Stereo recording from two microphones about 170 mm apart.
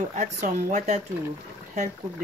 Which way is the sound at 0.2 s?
45° right (ahead or behind).